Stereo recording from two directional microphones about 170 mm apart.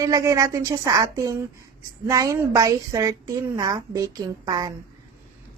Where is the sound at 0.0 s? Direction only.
20° right (ahead or behind).